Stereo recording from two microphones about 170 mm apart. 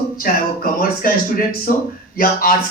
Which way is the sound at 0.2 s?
55° left (ahead or behind).